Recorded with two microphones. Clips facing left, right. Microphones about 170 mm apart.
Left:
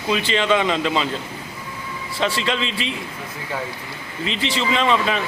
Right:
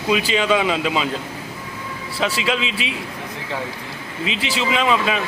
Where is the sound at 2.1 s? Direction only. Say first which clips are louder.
Even; 5° right (ahead or behind).